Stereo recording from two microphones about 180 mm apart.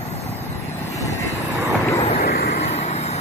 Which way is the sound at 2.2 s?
55° left (ahead or behind).